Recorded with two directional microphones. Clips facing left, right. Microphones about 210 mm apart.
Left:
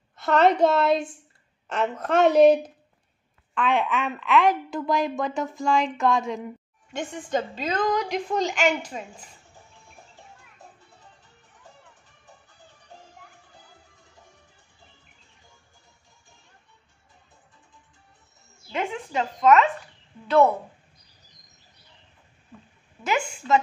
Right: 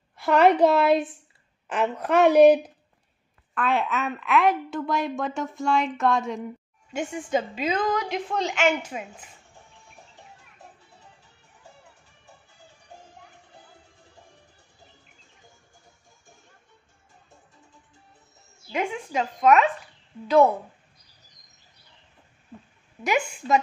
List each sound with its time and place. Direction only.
0.2 s a woman's voice: 5° right (ahead or behind)
3.5 s a woman's voice: 5° right (ahead or behind)
18.7 s a woman's voice: 15° right (ahead or behind)
23.0 s a woman's voice: 15° right (ahead or behind)